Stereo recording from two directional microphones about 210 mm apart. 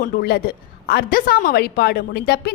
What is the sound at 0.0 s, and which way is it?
A woman's voice, 50° left (ahead or behind).